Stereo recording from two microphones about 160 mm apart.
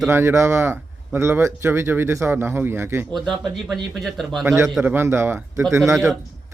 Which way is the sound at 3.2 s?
Centre (ahead or behind).